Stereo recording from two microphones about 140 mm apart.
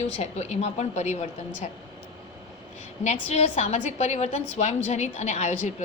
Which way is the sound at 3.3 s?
50° left (ahead or behind).